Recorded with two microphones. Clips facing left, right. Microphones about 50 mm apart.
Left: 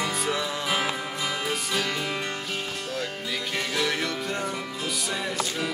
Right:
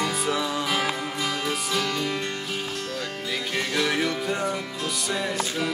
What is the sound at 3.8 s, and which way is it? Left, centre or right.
Music, centre.